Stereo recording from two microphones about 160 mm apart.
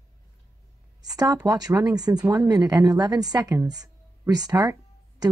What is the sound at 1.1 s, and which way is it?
A woman's voice, 25° right (ahead or behind).